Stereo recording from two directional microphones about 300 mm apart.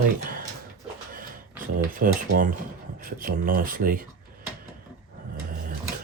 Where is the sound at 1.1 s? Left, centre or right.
Right.